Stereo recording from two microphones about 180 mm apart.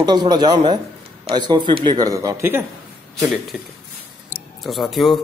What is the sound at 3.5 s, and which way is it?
Speech, centre (ahead or behind).